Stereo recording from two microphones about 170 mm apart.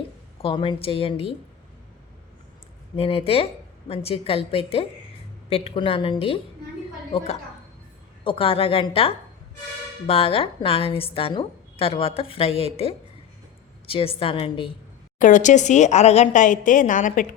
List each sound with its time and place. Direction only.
0.4 s a woman's voice: 30° left (ahead or behind)
2.9 s a woman's voice: 35° left (ahead or behind)
8.2 s a woman's voice: 30° left (ahead or behind)
15.2 s a woman's voice: 45° left (ahead or behind)